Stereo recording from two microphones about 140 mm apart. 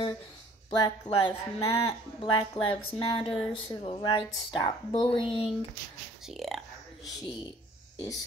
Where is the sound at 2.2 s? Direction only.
35° left (ahead or behind).